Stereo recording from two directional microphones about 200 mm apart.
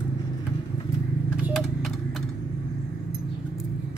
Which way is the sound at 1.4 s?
Centre (ahead or behind).